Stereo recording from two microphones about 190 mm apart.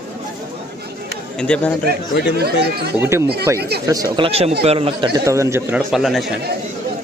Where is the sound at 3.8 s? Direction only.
20° right (ahead or behind).